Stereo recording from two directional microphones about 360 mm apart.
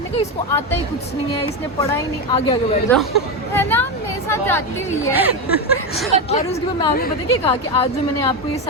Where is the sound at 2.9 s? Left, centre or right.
Centre.